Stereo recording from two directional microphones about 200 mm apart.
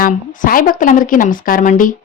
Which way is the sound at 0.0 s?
45° left (ahead or behind).